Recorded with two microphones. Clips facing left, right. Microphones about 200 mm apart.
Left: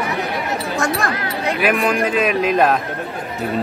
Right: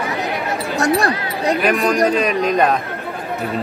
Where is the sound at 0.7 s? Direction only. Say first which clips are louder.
Right 6 dB; 35° right (ahead or behind).